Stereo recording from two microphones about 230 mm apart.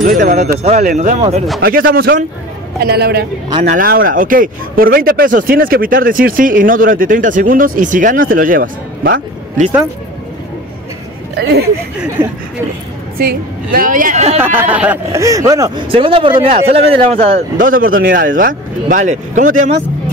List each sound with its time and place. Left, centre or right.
0.0 s a man's voice: right
13.2 s speech: right
14.4 s speech: centre; by 19.7 s right